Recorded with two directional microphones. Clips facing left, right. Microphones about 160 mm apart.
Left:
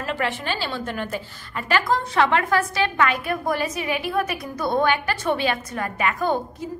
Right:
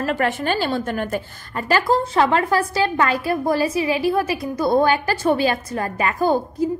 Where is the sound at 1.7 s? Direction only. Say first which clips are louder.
Right 4 dB; 35° right (ahead or behind).